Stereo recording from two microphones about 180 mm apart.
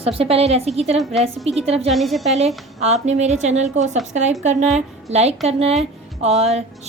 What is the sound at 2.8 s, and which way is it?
Speech, 40° right (ahead or behind).